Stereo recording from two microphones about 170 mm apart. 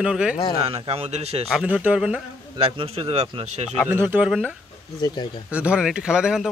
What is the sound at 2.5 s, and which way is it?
A man's voice, 35° right (ahead or behind).